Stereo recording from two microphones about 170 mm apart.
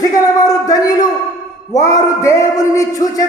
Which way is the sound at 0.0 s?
20° left (ahead or behind).